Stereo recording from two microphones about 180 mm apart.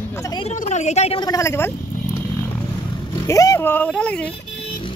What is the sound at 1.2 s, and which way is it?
Speech, 20° left (ahead or behind).